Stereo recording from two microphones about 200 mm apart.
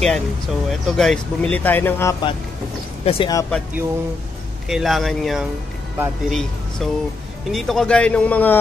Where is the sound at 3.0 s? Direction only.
30° left (ahead or behind).